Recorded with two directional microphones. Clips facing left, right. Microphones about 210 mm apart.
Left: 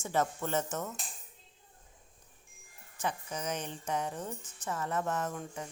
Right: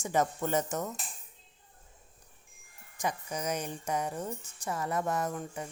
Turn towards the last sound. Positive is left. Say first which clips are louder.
# right 3 dB
turn(degrees=-5)  # may be behind; listen again after turning